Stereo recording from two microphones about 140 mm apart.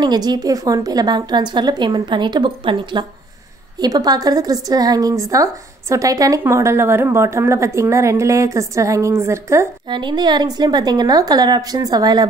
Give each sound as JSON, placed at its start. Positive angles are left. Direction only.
{"t": 0.0, "sound": "a woman's voice", "side_deg": -30}
{"t": 9.8, "sound": "a woman's voice", "side_deg": -35}